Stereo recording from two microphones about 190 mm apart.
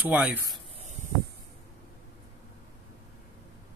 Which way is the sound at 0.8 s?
40° right (ahead or behind).